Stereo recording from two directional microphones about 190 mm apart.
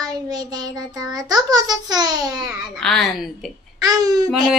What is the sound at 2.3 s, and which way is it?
A child's voice, centre (ahead or behind).